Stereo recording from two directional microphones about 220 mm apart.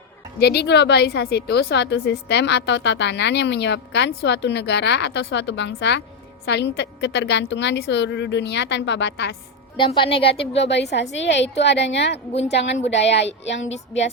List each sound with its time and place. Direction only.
0.3 s a woman's voice: 50° left (ahead or behind)
9.7 s speech: 20° left (ahead or behind)
10.4 s a woman's voice: 50° left (ahead or behind)
12.3 s speech: 30° left (ahead or behind)
12.5 s a woman's voice: 55° left (ahead or behind)